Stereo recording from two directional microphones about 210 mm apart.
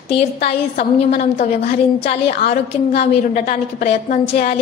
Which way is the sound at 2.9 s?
45° left (ahead or behind).